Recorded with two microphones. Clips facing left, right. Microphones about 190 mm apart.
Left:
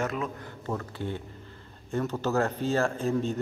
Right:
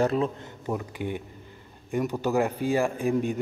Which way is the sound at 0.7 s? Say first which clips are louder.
Right 3 dB; 15° right (ahead or behind).